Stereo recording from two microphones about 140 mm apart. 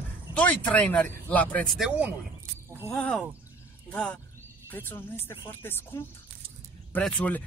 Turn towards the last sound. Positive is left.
turn(degrees=10)  # may be behind; listen again after turning